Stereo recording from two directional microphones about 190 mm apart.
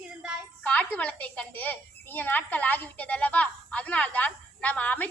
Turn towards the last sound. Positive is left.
turn(degrees=10)  # may be behind; listen again after turning